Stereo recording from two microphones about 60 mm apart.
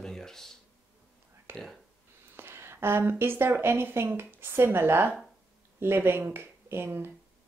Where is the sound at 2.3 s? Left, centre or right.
Right.